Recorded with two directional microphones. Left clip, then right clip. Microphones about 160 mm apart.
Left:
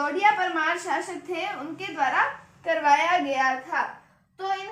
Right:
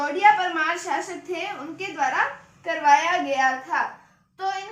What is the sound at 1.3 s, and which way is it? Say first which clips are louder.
A woman's voice: even; 25° left (ahead or behind).